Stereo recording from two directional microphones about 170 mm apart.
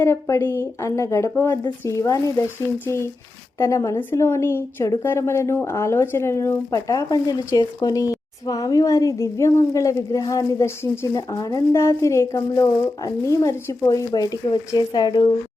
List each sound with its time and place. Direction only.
0.0 s a woman's voice: 15° left (ahead or behind)